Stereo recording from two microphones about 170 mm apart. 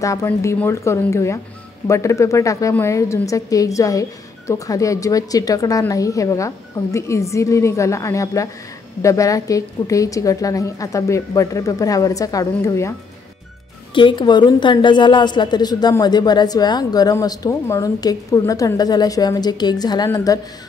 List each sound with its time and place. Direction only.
0.0 s a woman's voice: 20° left (ahead or behind)
13.9 s a woman's voice: 25° left (ahead or behind)